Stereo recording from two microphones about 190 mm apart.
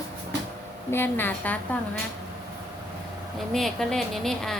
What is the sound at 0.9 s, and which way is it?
Speech, 10° left (ahead or behind).